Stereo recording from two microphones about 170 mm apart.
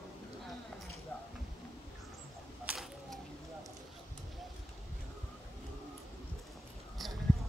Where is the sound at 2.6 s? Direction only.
5° right (ahead or behind).